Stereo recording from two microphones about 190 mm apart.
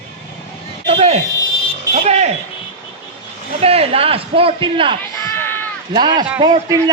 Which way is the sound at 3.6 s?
30° right (ahead or behind).